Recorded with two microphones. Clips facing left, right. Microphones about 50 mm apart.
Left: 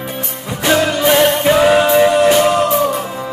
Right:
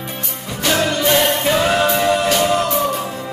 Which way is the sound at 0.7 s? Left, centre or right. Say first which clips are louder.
Left 4 dB; centre.